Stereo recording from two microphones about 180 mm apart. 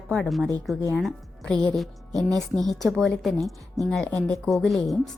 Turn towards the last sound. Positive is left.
turn(degrees=0)  # may be behind; listen again after turning